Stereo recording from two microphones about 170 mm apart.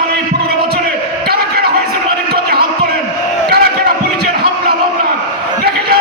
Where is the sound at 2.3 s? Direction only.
65° right (ahead or behind).